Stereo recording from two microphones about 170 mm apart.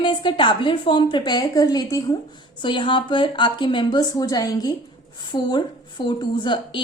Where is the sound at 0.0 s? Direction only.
30° left (ahead or behind).